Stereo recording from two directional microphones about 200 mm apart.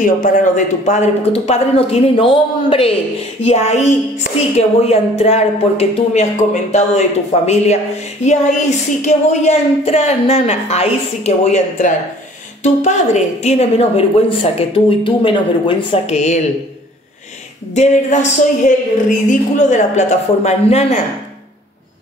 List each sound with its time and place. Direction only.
0.0 s speech: 40° left (ahead or behind)
17.7 s speech: 35° left (ahead or behind)